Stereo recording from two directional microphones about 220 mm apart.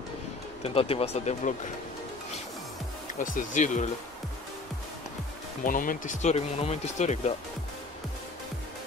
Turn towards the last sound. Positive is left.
turn(degrees=30)  # may be behind; listen again after turning